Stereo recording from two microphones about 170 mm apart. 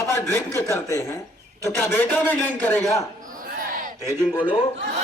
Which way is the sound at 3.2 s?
50° right (ahead or behind).